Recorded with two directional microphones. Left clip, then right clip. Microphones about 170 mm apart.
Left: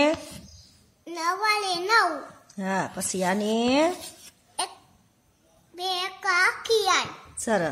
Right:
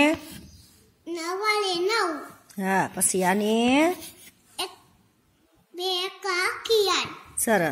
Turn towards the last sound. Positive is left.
turn(degrees=-5)  # may be behind; listen again after turning